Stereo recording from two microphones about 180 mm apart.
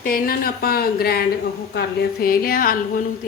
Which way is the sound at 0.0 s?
55° left (ahead or behind).